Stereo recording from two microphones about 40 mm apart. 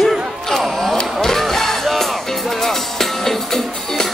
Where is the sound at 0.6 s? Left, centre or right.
Centre.